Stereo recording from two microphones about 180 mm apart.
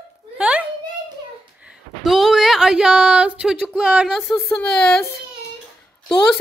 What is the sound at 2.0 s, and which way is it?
Speech, centre (ahead or behind).